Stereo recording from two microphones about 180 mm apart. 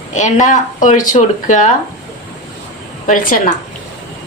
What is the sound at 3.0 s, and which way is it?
Speech, 50° left (ahead or behind).